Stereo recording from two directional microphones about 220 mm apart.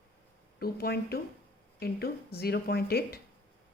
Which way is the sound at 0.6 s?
45° left (ahead or behind).